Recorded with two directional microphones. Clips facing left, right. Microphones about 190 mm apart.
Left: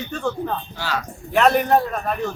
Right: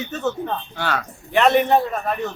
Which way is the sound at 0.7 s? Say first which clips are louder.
Right 2 dB; 55° right (ahead or behind).